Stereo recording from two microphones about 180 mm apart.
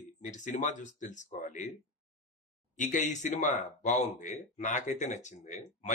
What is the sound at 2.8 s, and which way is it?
Speech, 45° left (ahead or behind).